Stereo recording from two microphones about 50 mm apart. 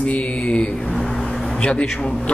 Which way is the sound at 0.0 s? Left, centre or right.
Left.